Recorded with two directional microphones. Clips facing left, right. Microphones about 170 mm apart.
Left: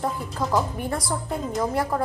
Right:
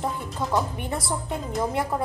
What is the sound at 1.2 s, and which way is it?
Speech, centre (ahead or behind).